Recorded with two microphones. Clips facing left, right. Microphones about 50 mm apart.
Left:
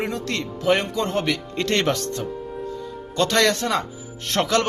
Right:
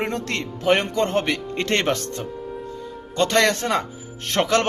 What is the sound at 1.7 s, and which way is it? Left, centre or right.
A man's voice, right.